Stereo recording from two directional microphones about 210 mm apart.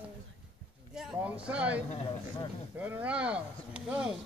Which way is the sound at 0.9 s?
5° right (ahead or behind).